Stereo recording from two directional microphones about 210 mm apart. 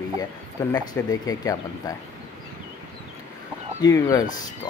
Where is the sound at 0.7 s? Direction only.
20° left (ahead or behind).